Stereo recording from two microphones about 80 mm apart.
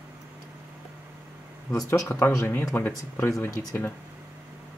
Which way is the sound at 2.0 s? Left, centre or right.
Left.